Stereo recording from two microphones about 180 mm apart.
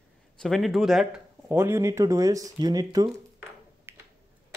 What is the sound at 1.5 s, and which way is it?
Speech, 15° right (ahead or behind).